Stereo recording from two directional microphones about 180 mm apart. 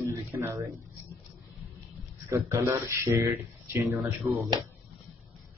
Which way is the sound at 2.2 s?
15° right (ahead or behind).